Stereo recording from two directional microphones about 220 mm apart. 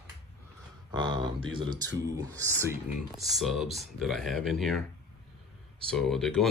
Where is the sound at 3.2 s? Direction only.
Centre (ahead or behind).